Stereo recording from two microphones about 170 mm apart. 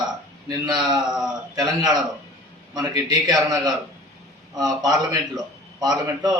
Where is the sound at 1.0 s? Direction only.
Centre (ahead or behind).